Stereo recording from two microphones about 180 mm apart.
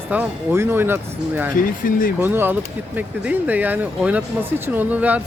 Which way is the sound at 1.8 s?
50° left (ahead or behind).